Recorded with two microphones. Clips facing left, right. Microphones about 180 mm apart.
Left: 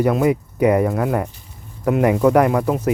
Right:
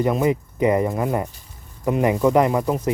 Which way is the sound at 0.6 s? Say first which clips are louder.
Left 3 dB; 65° left (ahead or behind).